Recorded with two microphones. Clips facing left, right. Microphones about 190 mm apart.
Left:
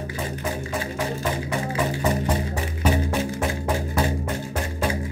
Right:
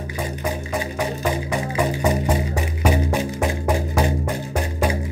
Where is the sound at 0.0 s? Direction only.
15° right (ahead or behind).